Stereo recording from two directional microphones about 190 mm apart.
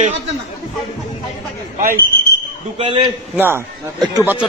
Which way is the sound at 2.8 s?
30° right (ahead or behind).